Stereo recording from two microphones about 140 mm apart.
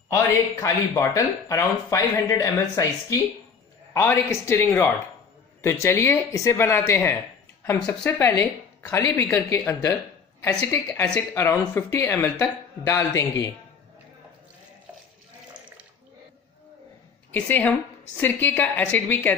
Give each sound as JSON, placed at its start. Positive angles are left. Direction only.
{"t": 0.1, "sound": "speech", "side_deg": 20}
{"t": 17.3, "sound": "speech", "side_deg": 10}